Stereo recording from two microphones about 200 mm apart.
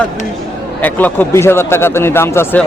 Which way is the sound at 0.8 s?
10° left (ahead or behind).